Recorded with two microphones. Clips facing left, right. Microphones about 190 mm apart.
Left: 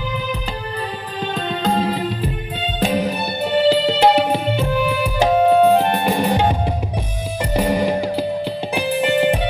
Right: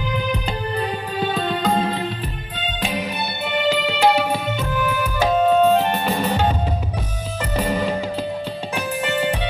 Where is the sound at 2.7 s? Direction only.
40° left (ahead or behind).